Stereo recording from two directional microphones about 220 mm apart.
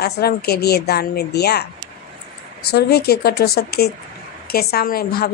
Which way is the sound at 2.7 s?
45° left (ahead or behind).